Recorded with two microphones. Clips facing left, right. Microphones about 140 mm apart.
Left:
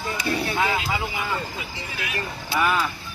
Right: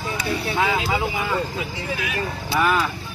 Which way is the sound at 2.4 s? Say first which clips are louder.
Right 2 dB; centre (ahead or behind).